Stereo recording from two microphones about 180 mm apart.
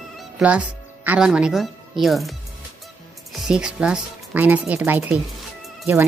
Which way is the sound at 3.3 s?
5° right (ahead or behind).